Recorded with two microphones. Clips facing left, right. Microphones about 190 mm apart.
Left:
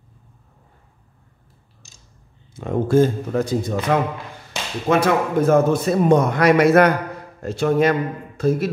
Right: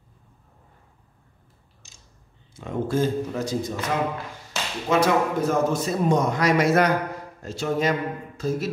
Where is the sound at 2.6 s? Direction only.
50° left (ahead or behind).